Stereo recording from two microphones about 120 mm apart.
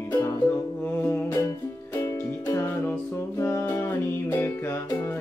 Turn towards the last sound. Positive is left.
turn(degrees=20)  # may be behind; listen again after turning